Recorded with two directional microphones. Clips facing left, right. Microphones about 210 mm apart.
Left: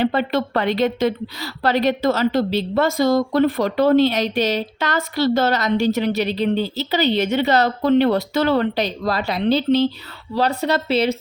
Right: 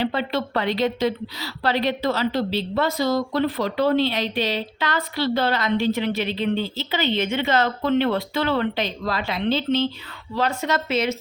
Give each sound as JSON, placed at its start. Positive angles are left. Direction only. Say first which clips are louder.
{"t": 0.0, "sound": "a woman's voice", "louder": "left 4 dB", "side_deg": 50}